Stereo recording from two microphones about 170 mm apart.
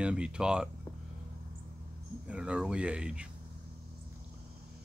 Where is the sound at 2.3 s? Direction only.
5° right (ahead or behind).